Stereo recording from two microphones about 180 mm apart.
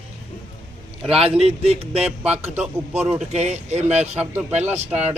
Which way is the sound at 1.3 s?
35° right (ahead or behind).